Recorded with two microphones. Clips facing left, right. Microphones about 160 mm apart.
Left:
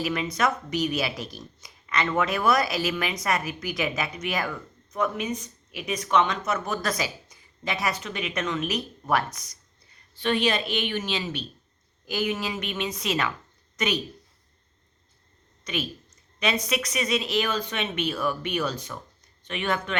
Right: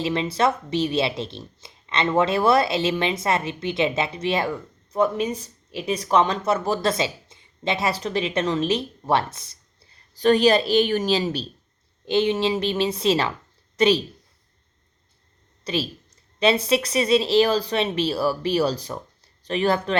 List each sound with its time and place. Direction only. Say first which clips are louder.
0.0 s speech: right 4 dB; 30° right (ahead or behind)
15.6 s speech: right 5 dB; 30° right (ahead or behind)